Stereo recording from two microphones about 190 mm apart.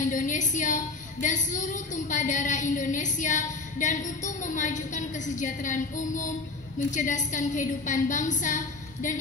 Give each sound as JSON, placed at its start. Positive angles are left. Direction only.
{"t": 0.0, "sound": "a woman's voice", "side_deg": 40}